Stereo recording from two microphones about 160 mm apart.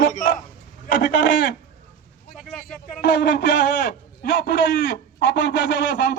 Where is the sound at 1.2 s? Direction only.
90° left.